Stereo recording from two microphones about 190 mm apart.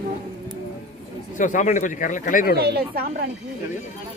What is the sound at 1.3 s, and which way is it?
Speech, 40° left (ahead or behind).